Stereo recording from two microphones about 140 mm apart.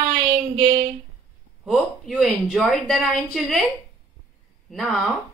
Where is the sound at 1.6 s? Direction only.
Centre (ahead or behind).